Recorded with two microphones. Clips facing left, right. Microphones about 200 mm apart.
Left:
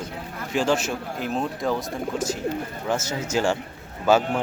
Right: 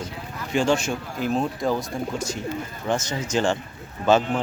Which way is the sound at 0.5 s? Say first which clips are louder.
Right 1 dB; 5° left (ahead or behind).